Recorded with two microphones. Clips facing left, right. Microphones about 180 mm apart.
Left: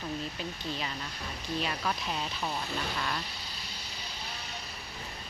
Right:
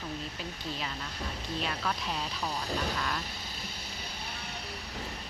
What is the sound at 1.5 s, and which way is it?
Speech, centre (ahead or behind).